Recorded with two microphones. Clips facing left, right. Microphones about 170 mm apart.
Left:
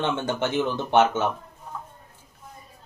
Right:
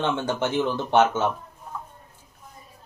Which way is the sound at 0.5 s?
15° left (ahead or behind).